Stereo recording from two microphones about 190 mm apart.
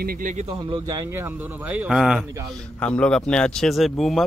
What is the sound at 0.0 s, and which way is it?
Speech, 50° right (ahead or behind).